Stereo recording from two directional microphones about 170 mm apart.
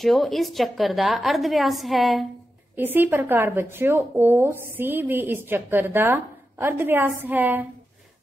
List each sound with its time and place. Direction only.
0.0 s a woman's voice: centre (ahead or behind)
2.7 s speech: 10° right (ahead or behind)